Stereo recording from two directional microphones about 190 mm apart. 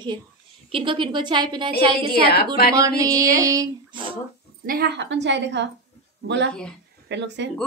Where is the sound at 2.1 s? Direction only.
55° left (ahead or behind).